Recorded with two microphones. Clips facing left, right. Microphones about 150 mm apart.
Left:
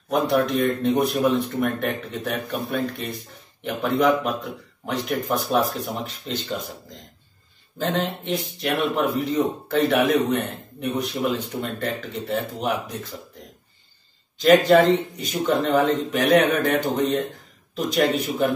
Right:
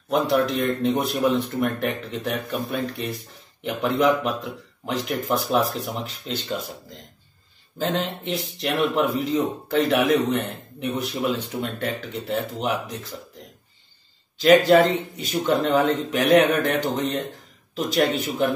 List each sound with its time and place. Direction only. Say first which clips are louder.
0.1 s speech: even; centre (ahead or behind)
7.8 s speech: left 1 dB; centre (ahead or behind)
14.7 s speech: left 1 dB; centre (ahead or behind)